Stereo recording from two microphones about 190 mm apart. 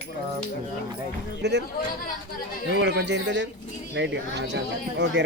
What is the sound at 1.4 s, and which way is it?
Speech, 65° right (ahead or behind).